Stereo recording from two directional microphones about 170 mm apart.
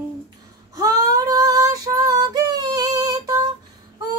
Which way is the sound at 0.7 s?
20° right (ahead or behind).